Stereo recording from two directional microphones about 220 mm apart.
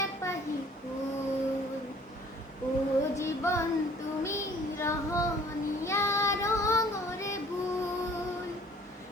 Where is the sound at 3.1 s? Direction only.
10° left (ahead or behind).